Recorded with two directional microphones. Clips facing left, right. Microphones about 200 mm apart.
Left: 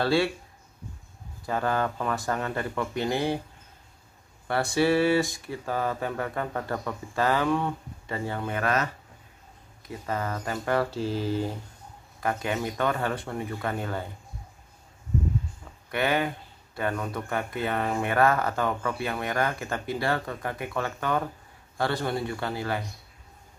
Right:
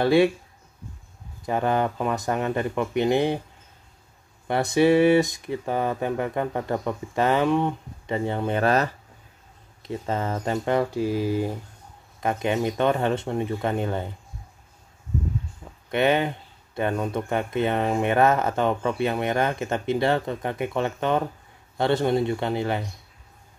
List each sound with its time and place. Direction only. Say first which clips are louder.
0.0 s speech: right 6 dB; 20° right (ahead or behind)
1.4 s speech: right 4 dB; 20° right (ahead or behind)
4.5 s speech: right 5 dB; 20° right (ahead or behind)
9.8 s speech: right 4 dB; 25° right (ahead or behind)
15.9 s speech: right 5 dB; 20° right (ahead or behind)